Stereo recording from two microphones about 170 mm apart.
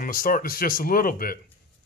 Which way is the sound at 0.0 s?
55° left (ahead or behind).